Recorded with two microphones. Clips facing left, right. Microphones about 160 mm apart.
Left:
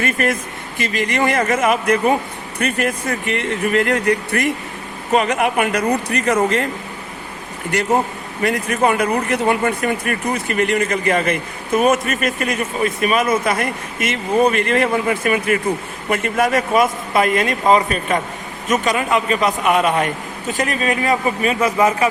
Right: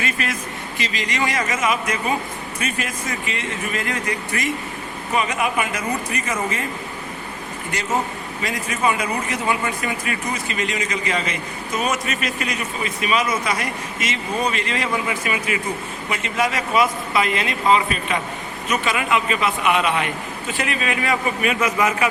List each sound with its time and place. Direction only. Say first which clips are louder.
0.0 s speech: left 6 dB; 50° left (ahead or behind); by 6.7 s 70° left (ahead or behind)
8.4 s speech: left 7 dB; 60° left (ahead or behind); by 22.0 s 35° left (ahead or behind)